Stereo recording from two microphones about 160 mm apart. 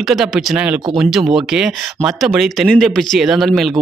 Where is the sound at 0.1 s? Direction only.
Centre (ahead or behind).